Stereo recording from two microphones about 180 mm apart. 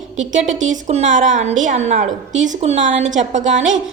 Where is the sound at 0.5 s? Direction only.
40° right (ahead or behind).